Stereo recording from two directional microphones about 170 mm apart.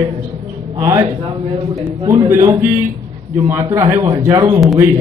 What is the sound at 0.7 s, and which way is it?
Speech, 15° right (ahead or behind).